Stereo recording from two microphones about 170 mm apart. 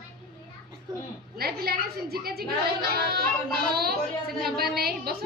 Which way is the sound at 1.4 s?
65° right (ahead or behind).